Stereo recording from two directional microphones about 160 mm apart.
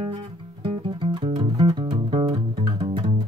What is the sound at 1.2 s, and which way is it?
Music, 30° right (ahead or behind).